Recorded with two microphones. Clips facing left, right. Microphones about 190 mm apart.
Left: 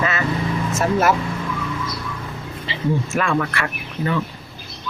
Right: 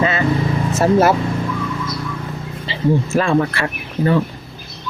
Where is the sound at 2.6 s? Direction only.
35° right (ahead or behind).